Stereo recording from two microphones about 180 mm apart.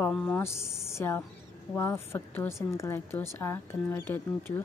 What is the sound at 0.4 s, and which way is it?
A woman's voice, 15° left (ahead or behind).